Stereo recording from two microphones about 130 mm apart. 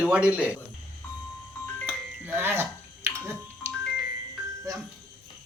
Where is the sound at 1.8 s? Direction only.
15° right (ahead or behind).